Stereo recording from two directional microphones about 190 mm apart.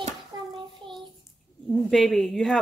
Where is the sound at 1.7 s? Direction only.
Centre (ahead or behind).